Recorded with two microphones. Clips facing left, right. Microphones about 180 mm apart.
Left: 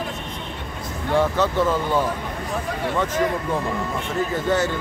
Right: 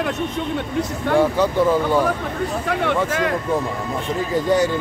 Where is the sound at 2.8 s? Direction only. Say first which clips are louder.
Right 1 dB; 90° right.